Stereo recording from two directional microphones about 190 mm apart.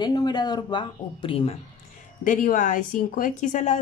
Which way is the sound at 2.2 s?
45° left (ahead or behind).